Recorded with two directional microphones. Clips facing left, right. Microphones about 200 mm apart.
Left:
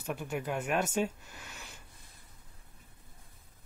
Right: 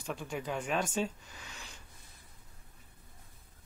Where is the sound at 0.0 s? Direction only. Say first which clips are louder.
Left 2 dB; 10° left (ahead or behind).